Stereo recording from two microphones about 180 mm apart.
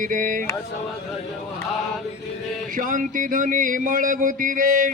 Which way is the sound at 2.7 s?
50° right (ahead or behind).